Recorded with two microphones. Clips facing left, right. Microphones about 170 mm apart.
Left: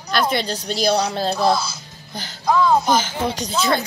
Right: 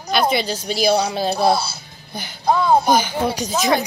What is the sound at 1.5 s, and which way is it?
Speech, 30° right (ahead or behind).